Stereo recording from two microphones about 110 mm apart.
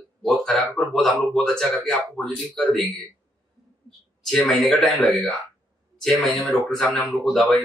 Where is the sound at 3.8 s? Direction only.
5° left (ahead or behind).